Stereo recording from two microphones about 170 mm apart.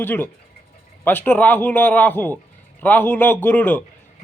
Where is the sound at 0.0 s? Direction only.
10° left (ahead or behind).